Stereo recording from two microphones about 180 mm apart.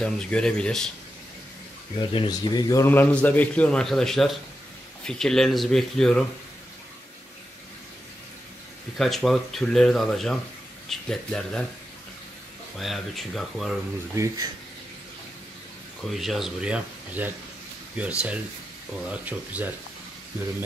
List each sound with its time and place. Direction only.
0.0 s speech: 5° left (ahead or behind)
2.0 s a man's voice: 25° left (ahead or behind); by 6.2 s 5° left (ahead or behind)
8.9 s speech: centre (ahead or behind)
12.7 s speech: centre (ahead or behind)
14.1 s speech: 20° right (ahead or behind)
16.1 s speech: centre (ahead or behind)